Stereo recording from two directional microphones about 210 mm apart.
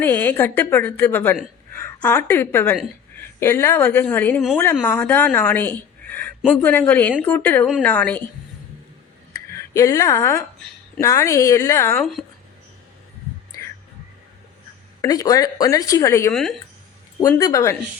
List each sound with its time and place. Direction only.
0.0 s a woman's voice: 10° left (ahead or behind)
9.3 s a sound: 15° left (ahead or behind)
11.0 s a woman's voice: 15° left (ahead or behind)
13.5 s whispering: 15° left (ahead or behind)
15.0 s a woman's voice: 15° left (ahead or behind)
16.3 s speech: centre (ahead or behind)
17.2 s a woman's voice: 15° left (ahead or behind)